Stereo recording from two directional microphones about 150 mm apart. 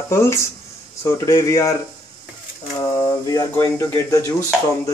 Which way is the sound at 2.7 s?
25° left (ahead or behind).